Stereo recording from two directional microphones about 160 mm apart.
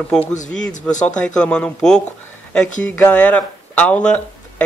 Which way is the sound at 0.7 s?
50° left (ahead or behind).